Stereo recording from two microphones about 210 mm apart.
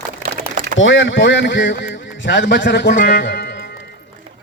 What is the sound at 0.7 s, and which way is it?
Speech, 60° left (ahead or behind).